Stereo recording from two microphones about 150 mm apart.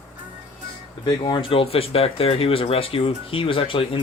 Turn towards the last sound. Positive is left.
turn(degrees=35)  # may be behind; listen again after turning